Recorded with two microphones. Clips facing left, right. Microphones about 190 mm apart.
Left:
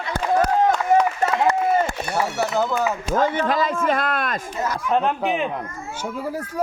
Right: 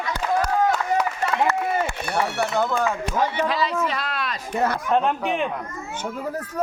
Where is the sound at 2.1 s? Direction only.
5° left (ahead or behind).